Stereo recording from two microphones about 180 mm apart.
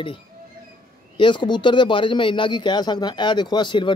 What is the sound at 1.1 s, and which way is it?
Speech, 25° left (ahead or behind).